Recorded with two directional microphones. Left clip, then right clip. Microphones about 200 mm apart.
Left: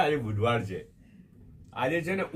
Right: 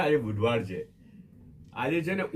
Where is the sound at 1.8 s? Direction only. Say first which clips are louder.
Left 1 dB; 15° left (ahead or behind).